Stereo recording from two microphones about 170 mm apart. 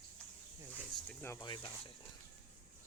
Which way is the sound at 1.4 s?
30° left (ahead or behind).